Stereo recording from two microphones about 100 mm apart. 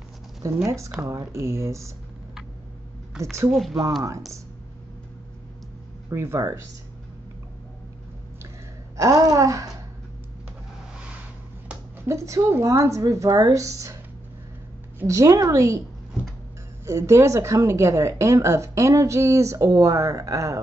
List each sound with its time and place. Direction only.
0.7 s a woman's voice: 30° right (ahead or behind)
3.5 s speech: centre (ahead or behind)
6.0 s speech: 25° right (ahead or behind)
8.9 s a woman's voice: 35° right (ahead or behind)
12.1 s a woman's voice: 30° right (ahead or behind)
15.0 s a woman's voice: 35° right (ahead or behind)
16.8 s a woman's voice: 30° right (ahead or behind)